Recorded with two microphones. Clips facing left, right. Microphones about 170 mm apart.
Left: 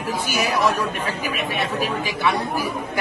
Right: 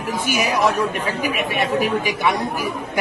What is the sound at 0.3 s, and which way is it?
Speech, 15° right (ahead or behind).